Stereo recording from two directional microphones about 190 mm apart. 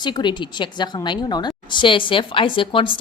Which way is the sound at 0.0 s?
25° left (ahead or behind).